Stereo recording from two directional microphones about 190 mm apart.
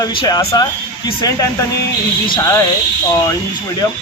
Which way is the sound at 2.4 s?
15° left (ahead or behind).